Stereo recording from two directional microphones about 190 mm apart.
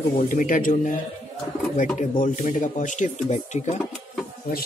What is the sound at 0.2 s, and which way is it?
Speech, 45° left (ahead or behind).